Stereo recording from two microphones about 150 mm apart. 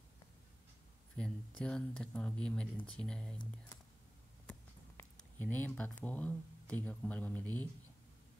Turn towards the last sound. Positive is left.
turn(degrees=10)  # may be behind; listen again after turning